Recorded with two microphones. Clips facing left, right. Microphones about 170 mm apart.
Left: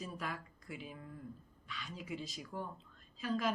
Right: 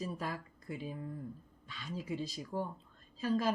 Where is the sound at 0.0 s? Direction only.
35° right (ahead or behind).